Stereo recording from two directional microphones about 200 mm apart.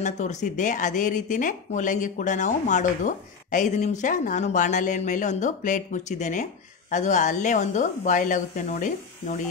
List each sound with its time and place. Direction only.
0.0 s speech: 35° left (ahead or behind)